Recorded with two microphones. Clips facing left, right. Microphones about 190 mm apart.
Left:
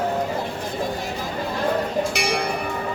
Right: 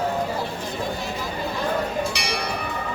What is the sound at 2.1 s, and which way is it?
Music, 50° left (ahead or behind).